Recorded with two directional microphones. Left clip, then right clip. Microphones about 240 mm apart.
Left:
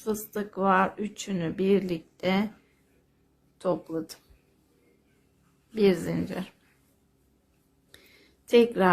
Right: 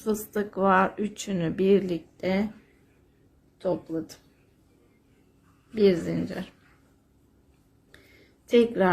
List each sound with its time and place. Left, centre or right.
0.0 s speech: centre
3.6 s a woman's voice: centre
5.7 s a woman's voice: centre
7.9 s a sound: centre